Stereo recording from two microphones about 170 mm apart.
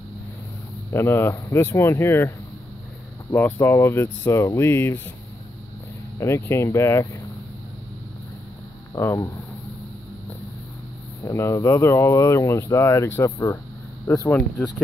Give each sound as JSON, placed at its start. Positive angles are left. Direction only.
{"t": 0.9, "sound": "speech", "side_deg": 15}
{"t": 6.1, "sound": "speech", "side_deg": 15}
{"t": 8.9, "sound": "speech", "side_deg": 20}
{"t": 11.2, "sound": "speech", "side_deg": 15}